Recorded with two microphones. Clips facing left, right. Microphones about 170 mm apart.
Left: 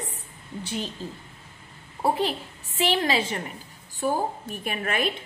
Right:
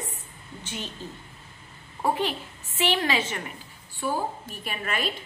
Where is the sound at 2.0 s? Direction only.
35° left (ahead or behind).